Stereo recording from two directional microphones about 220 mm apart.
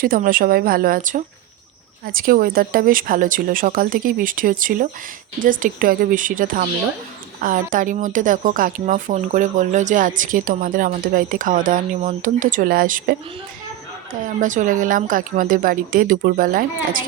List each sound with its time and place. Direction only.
0.0 s speech: 40° right (ahead or behind)